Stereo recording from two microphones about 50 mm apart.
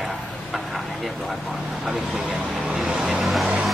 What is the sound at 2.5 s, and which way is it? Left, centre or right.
Speech, centre.